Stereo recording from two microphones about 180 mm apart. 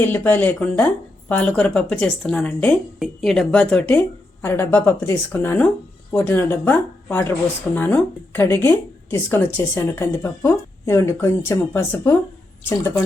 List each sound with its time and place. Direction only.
0.0 s speech: 10° left (ahead or behind)